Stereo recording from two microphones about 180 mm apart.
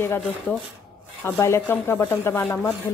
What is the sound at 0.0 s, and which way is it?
Speech, 15° left (ahead or behind).